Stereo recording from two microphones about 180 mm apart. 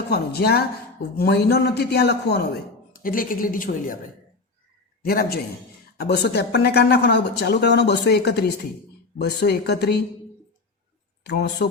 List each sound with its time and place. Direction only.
0.1 s speech: 60° left (ahead or behind)
2.9 s a woman's voice: 50° left (ahead or behind)
5.0 s speech: 55° left (ahead or behind)
11.2 s speech: 70° left (ahead or behind)